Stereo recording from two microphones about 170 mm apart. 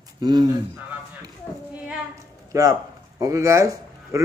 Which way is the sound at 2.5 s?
20° right (ahead or behind).